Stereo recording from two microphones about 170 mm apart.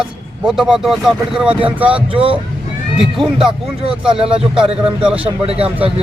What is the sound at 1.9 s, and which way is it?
Speech, 30° right (ahead or behind).